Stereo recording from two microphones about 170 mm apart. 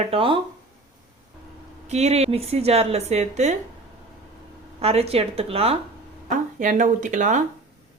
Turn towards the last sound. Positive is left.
turn(degrees=-45)  # may be behind; listen again after turning